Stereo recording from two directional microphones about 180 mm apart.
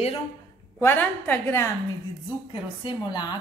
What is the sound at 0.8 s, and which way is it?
Speech, 10° left (ahead or behind).